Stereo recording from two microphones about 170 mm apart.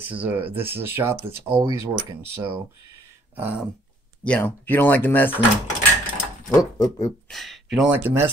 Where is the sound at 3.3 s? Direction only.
10° right (ahead or behind).